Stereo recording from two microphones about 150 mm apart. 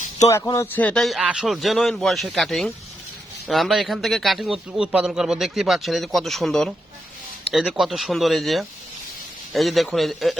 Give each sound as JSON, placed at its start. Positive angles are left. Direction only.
{"t": 0.3, "sound": "a man's voice", "side_deg": 20}